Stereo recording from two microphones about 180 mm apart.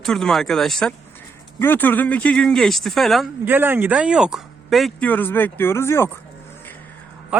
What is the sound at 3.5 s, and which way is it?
Speech, 10° right (ahead or behind).